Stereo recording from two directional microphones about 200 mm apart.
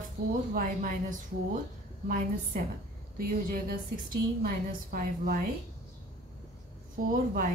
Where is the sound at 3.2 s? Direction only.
45° right (ahead or behind).